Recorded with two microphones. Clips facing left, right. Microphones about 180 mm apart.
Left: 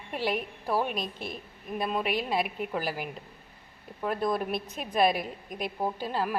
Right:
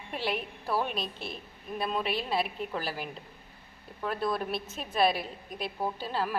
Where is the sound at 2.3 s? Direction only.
10° left (ahead or behind).